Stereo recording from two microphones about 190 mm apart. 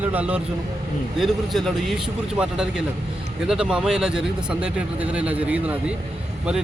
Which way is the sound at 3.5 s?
5° right (ahead or behind).